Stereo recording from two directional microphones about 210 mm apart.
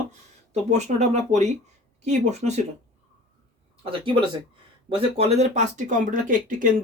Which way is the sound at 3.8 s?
25° right (ahead or behind).